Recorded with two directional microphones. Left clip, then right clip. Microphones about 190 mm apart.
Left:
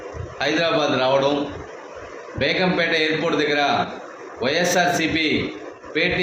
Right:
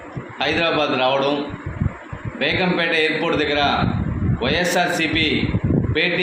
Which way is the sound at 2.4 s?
10° left (ahead or behind).